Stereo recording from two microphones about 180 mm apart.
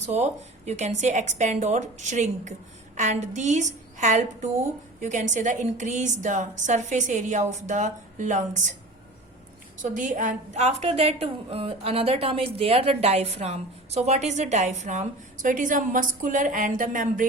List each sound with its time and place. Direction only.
0.0 s a woman's voice: 40° right (ahead or behind)
9.8 s a woman's voice: 45° right (ahead or behind)